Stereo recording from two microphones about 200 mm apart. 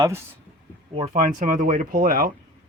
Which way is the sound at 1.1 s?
40° right (ahead or behind).